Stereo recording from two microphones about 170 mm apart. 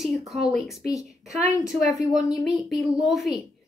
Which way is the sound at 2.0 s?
Centre (ahead or behind).